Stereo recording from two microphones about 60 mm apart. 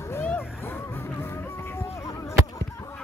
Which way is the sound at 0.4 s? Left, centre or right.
Left.